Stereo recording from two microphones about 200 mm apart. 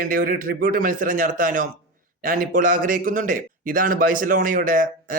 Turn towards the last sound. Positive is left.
turn(degrees=-45)  # may be behind; listen again after turning